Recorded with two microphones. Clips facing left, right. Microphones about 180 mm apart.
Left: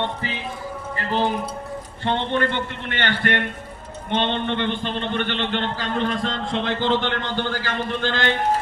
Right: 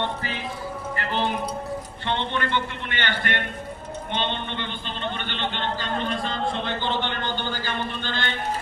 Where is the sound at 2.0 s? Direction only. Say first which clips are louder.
Left 5 dB; 45° left (ahead or behind); by 8.3 s 90° left.